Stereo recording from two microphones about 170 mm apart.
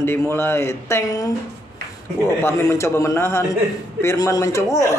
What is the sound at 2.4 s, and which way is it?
A man's voice, 15° left (ahead or behind).